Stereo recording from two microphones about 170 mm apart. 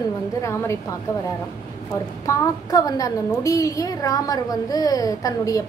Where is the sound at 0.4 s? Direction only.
15° left (ahead or behind).